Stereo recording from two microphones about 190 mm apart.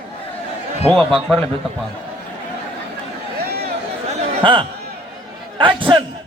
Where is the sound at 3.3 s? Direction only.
55° right (ahead or behind).